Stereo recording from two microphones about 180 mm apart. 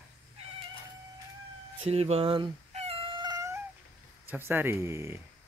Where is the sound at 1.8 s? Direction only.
35° right (ahead or behind); by 3.6 s 20° right (ahead or behind).